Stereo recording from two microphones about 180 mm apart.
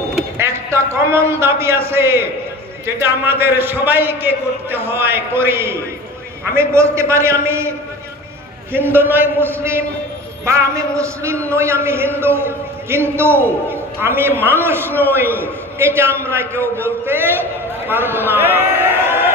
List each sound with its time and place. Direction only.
0.4 s a sound: 15° right (ahead or behind)
3.0 s a man's voice: 10° right (ahead or behind)
8.7 s a man's voice: 10° right (ahead or behind)